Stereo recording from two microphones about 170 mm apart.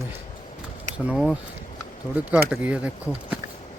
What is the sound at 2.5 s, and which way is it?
Speech, 5° right (ahead or behind).